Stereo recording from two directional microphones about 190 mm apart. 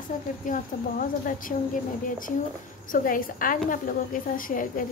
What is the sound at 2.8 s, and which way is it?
Speech, 45° left (ahead or behind).